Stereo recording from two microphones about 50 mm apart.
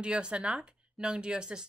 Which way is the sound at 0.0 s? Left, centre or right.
Right.